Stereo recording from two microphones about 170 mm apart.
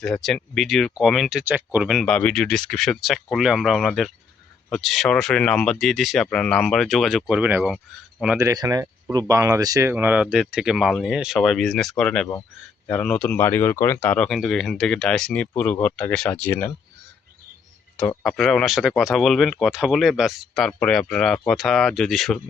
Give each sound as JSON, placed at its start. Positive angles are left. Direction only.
{"t": 0.0, "sound": "speech", "side_deg": 0}
{"t": 8.4, "sound": "speech", "side_deg": -20}
{"t": 17.9, "sound": "speech", "side_deg": 10}
{"t": 18.2, "sound": "speech", "side_deg": 0}